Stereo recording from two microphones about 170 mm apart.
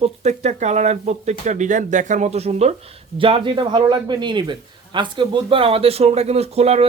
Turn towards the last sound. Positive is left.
turn(degrees=-40)  # may be behind; listen again after turning